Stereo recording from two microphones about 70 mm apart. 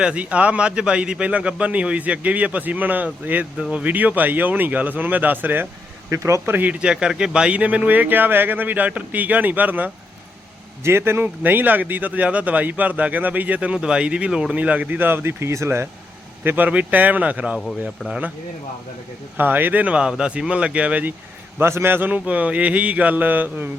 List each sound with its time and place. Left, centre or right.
0.0 s a man's voice: centre
6.1 s speech: right
6.4 s speech: right
6.7 s speech: centre
10.8 s speech: right
16.4 s speech: right
18.0 s speech: centre
19.4 s a man's voice: right
21.6 s speech: right